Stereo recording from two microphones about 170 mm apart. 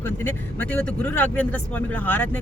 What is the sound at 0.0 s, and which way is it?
Speech, 10° left (ahead or behind).